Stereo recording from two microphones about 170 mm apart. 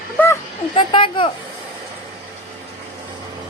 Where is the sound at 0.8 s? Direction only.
30° left (ahead or behind).